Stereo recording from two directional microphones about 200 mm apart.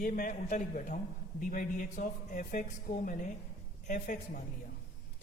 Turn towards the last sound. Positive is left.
turn(degrees=45)  # may be behind; listen again after turning